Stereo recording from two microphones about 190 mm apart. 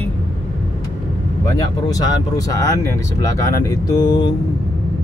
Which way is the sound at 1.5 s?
20° left (ahead or behind).